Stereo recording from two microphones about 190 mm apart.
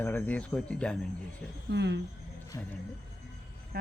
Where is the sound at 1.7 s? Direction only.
65° right (ahead or behind).